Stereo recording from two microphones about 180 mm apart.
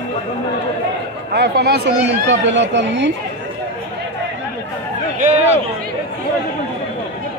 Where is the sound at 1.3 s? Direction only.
65° right (ahead or behind).